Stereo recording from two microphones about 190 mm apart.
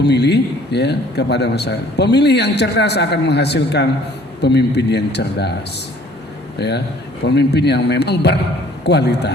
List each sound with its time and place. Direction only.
0.0 s a man's voice: 60° left (ahead or behind)
6.6 s a man's voice: 60° left (ahead or behind)